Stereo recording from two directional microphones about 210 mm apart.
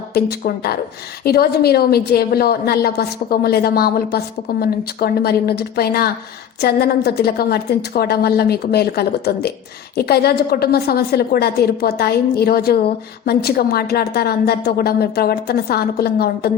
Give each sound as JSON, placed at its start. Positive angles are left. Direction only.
{"t": 0.1, "sound": "a woman's voice", "side_deg": 50}